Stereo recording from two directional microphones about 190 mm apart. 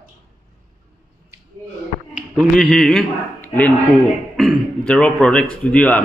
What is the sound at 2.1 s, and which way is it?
A man's voice, 5° right (ahead or behind).